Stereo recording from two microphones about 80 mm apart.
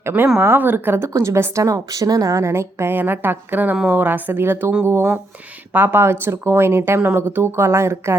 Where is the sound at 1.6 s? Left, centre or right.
Right.